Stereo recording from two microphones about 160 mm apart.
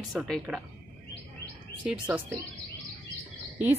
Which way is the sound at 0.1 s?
Centre (ahead or behind).